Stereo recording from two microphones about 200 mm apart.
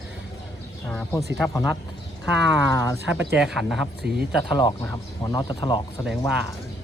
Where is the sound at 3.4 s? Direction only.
Centre (ahead or behind).